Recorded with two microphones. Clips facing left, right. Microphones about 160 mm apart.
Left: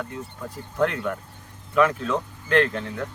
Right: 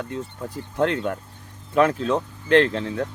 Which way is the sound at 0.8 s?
30° right (ahead or behind).